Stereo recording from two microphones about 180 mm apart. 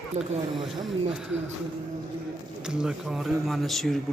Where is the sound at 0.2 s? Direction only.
40° right (ahead or behind).